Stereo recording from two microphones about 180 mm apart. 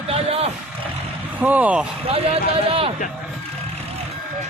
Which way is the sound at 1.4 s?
10° right (ahead or behind).